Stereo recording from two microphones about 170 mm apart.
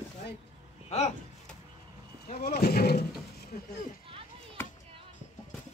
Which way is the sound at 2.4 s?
65° left (ahead or behind).